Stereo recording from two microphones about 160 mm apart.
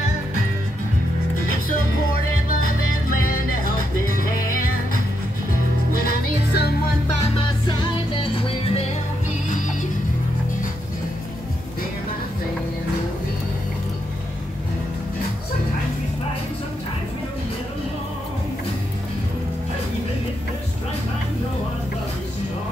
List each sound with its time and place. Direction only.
3.2 s music: 60° left (ahead or behind)
6.0 s music: 85° left
8.2 s music: 35° left (ahead or behind)